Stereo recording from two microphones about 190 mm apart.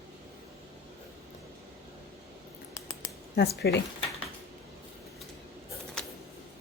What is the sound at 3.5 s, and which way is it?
Speech, 65° left (ahead or behind).